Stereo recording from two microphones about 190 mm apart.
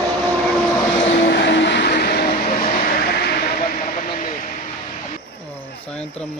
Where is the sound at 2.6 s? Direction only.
40° left (ahead or behind).